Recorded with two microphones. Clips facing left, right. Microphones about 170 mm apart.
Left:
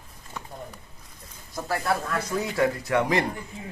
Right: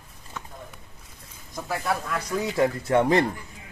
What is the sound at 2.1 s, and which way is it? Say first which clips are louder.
Speech: right 1 dB; 20° right (ahead or behind).